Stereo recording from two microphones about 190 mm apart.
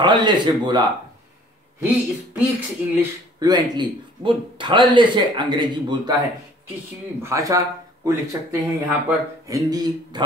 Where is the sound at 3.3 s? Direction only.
20° right (ahead or behind).